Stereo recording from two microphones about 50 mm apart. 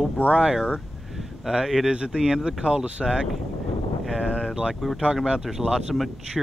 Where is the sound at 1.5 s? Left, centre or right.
Centre.